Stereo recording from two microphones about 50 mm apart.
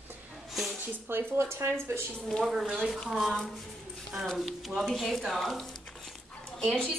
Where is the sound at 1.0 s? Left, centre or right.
Right.